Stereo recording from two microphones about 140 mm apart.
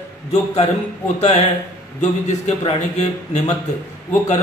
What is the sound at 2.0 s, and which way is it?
A man's voice, 55° left (ahead or behind).